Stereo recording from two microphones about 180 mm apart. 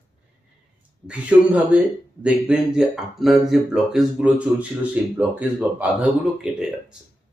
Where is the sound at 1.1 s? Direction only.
5° right (ahead or behind).